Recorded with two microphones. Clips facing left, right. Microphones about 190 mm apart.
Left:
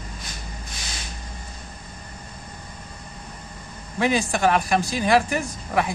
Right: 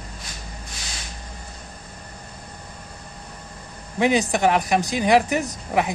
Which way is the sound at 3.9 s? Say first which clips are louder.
Right 2 dB; 20° right (ahead or behind).